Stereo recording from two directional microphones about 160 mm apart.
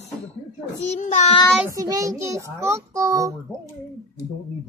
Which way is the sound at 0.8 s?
45° left (ahead or behind).